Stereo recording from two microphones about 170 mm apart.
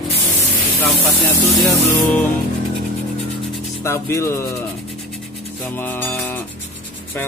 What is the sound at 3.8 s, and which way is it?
Speech, 15° left (ahead or behind).